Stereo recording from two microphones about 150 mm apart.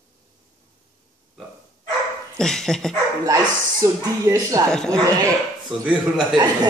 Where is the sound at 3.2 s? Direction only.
25° right (ahead or behind).